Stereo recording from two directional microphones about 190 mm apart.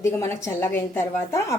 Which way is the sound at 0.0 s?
15° left (ahead or behind).